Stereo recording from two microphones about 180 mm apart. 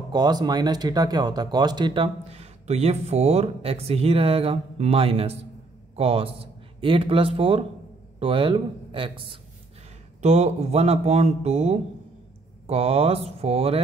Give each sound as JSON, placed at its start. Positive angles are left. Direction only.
{"t": 0.1, "sound": "a man's voice", "side_deg": -25}